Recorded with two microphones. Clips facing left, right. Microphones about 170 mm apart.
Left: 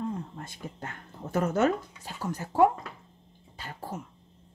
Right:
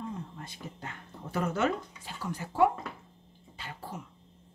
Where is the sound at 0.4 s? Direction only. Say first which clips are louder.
Left 3 dB; 50° left (ahead or behind).